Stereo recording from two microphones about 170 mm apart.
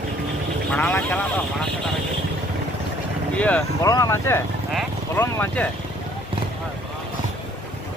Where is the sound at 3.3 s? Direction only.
10° left (ahead or behind).